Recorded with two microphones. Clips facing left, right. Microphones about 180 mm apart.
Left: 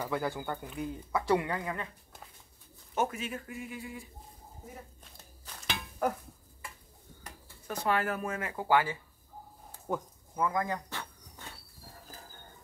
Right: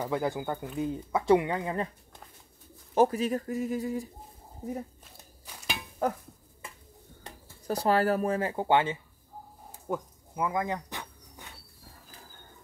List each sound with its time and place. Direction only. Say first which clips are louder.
0.0 s speech: right 4 dB; 20° right (ahead or behind)
2.9 s speech: right 9 dB; 35° right (ahead or behind)
5.4 s a sound: right 1 dB; 10° right (ahead or behind)
7.2 s speech: right 8 dB; 35° right (ahead or behind)
9.8 s insect: right 1 dB; 10° right (ahead or behind)